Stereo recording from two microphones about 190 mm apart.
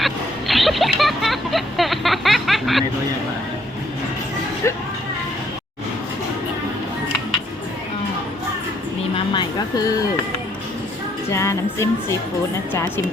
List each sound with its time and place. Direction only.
0.0 s music: centre (ahead or behind)
4.6 s vehicle: 15° left (ahead or behind)
9.1 s music: 25° left (ahead or behind)
11.3 s music: 15° left (ahead or behind)